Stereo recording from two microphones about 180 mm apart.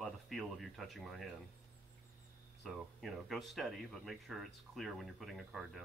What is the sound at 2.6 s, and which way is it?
Speech, centre (ahead or behind).